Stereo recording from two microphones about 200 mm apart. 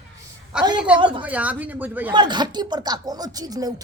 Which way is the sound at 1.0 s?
25° right (ahead or behind).